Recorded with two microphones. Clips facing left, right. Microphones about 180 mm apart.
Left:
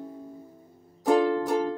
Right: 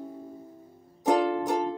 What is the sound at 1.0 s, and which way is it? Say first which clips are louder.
Music: left 2 dB; 20° right (ahead or behind).